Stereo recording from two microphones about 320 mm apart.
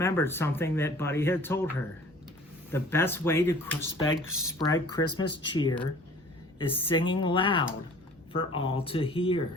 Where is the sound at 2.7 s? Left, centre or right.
Centre.